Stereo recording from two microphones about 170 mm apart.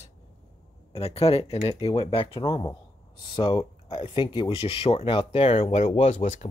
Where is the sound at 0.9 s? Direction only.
35° left (ahead or behind).